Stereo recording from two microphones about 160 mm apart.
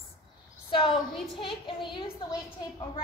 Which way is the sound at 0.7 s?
30° left (ahead or behind).